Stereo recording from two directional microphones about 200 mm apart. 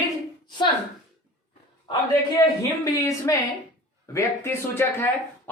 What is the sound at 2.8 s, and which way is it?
Speech, 15° left (ahead or behind).